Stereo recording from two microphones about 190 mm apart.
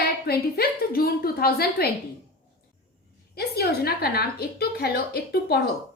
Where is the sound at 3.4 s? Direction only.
55° left (ahead or behind).